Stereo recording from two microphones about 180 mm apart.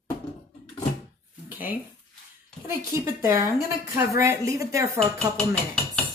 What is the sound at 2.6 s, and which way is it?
A woman's voice, 15° right (ahead or behind).